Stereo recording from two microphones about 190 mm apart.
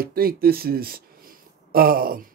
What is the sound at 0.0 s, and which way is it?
Speech, 50° right (ahead or behind).